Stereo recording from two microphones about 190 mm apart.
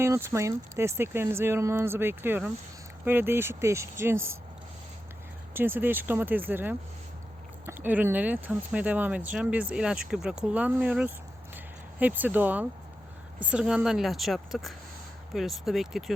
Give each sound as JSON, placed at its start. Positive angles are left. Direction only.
{"t": 0.0, "sound": "speech", "side_deg": -15}
{"t": 5.5, "sound": "speech", "side_deg": -10}
{"t": 11.5, "sound": "a sound", "side_deg": -10}
{"t": 13.4, "sound": "speech", "side_deg": -5}